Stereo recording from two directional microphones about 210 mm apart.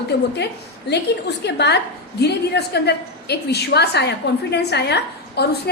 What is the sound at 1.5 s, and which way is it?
A woman's voice, 55° left (ahead or behind).